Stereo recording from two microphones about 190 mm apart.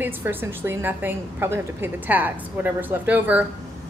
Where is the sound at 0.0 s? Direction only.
10° right (ahead or behind).